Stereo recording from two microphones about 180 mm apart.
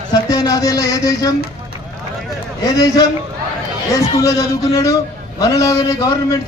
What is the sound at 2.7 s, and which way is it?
Speech, 20° left (ahead or behind).